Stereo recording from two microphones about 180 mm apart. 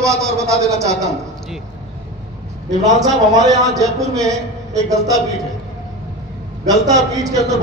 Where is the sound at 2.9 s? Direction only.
20° right (ahead or behind).